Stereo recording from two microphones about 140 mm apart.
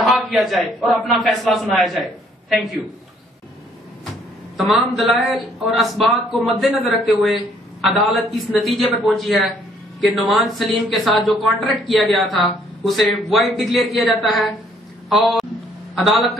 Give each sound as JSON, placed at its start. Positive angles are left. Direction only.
{"t": 0.0, "sound": "speech", "side_deg": 0}
{"t": 4.6, "sound": "speech", "side_deg": 0}
{"t": 15.0, "sound": "a man's voice", "side_deg": 0}